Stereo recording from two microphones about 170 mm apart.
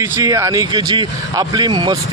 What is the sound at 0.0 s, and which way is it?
A man's voice, 20° right (ahead or behind).